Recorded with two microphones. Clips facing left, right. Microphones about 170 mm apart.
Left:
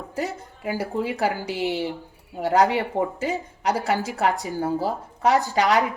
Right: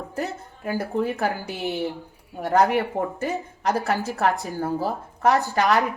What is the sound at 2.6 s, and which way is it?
A woman's voice, 20° left (ahead or behind).